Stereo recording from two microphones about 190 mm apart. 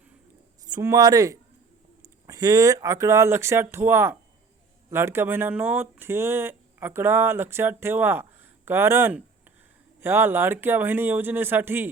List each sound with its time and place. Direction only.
0.7 s speech: 15° right (ahead or behind)